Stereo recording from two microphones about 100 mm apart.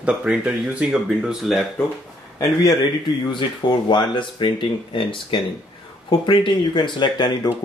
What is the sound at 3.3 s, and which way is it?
Speech, 50° left (ahead or behind).